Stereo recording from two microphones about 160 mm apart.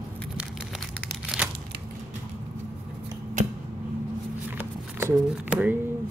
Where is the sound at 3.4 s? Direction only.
55° right (ahead or behind).